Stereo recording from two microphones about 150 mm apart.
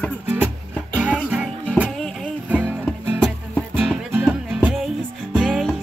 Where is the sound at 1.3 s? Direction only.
10° right (ahead or behind).